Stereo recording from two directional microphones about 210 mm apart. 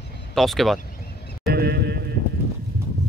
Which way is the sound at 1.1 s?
50° left (ahead or behind).